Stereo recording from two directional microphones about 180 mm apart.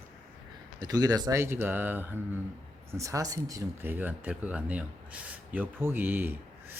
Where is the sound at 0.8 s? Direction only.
20° right (ahead or behind).